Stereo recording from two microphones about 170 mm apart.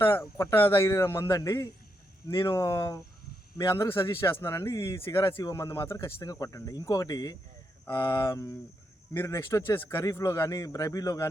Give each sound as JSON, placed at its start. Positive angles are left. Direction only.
{"t": 0.0, "sound": "speech", "side_deg": 15}